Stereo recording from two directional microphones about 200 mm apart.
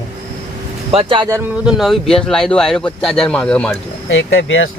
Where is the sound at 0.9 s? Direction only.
30° right (ahead or behind).